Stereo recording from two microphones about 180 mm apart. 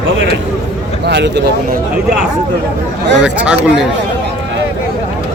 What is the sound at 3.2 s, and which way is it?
Speech, 5° right (ahead or behind).